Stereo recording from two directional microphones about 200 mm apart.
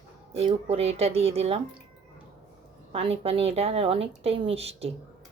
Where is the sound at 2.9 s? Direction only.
30° right (ahead or behind).